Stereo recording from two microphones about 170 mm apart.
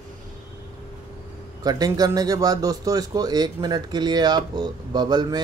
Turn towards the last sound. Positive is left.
turn(degrees=-25)  # may be behind; listen again after turning